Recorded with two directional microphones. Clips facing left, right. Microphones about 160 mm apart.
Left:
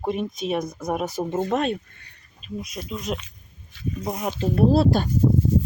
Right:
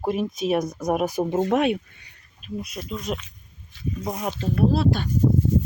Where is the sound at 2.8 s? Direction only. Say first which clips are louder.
Left 1 dB; centre (ahead or behind).